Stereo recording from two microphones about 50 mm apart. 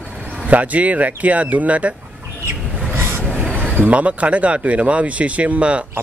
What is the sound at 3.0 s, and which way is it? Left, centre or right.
Vehicle, right.